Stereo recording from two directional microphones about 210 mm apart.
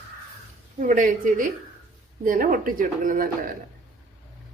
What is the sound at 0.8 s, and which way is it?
A woman's voice, 40° right (ahead or behind).